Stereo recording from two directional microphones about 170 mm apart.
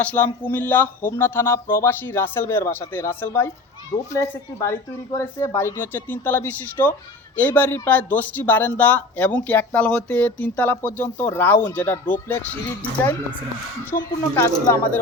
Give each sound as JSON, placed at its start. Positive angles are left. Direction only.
{"t": 0.0, "sound": "speech", "side_deg": 10}
{"t": 13.9, "sound": "speech", "side_deg": 55}
{"t": 14.3, "sound": "speech", "side_deg": 15}